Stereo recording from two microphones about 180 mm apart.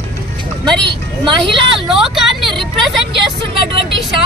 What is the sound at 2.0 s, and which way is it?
Speech, centre (ahead or behind).